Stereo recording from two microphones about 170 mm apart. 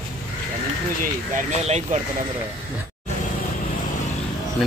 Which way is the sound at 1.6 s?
40° right (ahead or behind).